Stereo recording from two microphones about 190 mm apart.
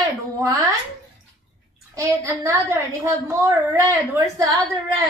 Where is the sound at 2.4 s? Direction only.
15° right (ahead or behind).